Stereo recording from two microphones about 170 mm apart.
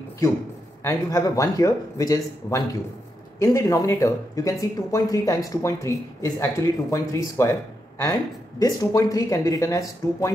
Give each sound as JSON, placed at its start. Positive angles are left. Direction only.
{"t": 0.8, "sound": "speech", "side_deg": 20}